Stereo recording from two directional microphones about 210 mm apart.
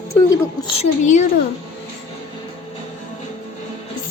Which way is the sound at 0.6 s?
30° left (ahead or behind).